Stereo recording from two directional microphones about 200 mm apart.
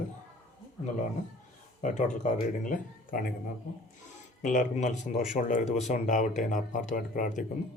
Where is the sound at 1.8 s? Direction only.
40° left (ahead or behind).